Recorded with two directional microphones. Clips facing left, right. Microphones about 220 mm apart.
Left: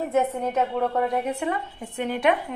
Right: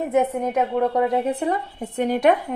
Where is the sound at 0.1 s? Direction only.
15° right (ahead or behind).